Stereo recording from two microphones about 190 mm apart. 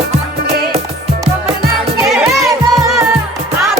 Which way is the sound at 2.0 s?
Centre (ahead or behind).